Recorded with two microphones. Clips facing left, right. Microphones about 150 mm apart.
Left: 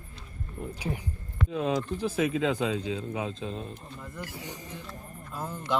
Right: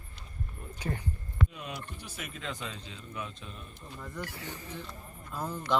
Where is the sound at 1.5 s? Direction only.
90° left.